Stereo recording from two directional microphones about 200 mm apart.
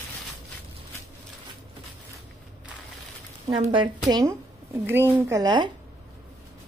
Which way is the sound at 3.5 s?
25° right (ahead or behind).